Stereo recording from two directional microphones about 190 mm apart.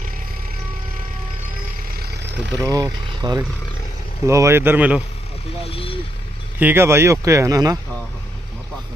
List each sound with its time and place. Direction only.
2.0 s vehicle: 65° right (ahead or behind)
2.5 s speech: 20° right (ahead or behind)
5.7 s speech: 30° left (ahead or behind)
6.6 s speech: 10° right (ahead or behind)